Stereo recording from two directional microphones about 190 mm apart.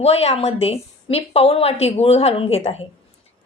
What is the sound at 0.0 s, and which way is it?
A woman's voice, 30° left (ahead or behind).